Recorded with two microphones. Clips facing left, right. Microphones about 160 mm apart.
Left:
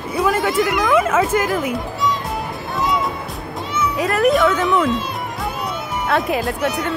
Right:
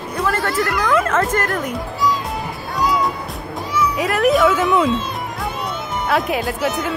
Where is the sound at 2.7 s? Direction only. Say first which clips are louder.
Right 1 dB; 25° left (ahead or behind).